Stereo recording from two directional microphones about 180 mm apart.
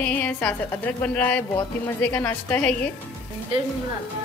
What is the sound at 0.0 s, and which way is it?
A woman's voice, 10° left (ahead or behind).